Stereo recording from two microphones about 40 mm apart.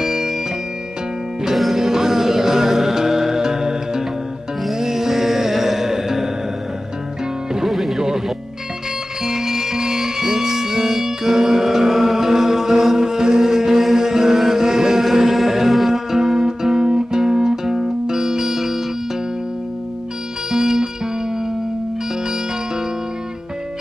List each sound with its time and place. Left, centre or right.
0.0 s music: centre
1.4 s music: centre
7.6 s music: centre
9.2 s music: centre
20.5 s music: centre